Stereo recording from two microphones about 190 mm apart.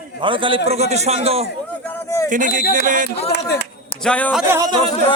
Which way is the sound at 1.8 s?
15° left (ahead or behind).